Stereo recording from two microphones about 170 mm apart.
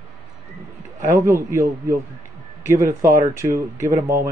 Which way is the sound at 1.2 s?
15° right (ahead or behind).